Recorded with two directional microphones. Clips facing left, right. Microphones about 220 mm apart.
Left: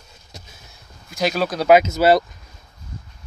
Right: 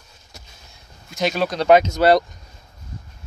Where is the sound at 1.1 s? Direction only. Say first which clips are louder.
Even; centre (ahead or behind).